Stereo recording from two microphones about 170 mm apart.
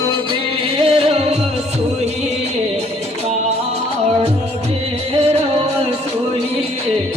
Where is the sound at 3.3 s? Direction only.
40° right (ahead or behind).